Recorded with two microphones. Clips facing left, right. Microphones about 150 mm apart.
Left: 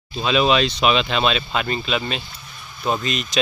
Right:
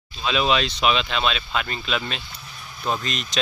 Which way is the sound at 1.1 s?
5° left (ahead or behind).